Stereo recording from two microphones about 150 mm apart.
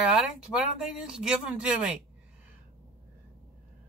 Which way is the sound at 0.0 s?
5° right (ahead or behind).